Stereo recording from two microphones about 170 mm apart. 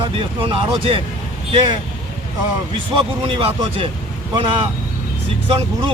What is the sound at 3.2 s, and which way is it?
Speech, 35° right (ahead or behind).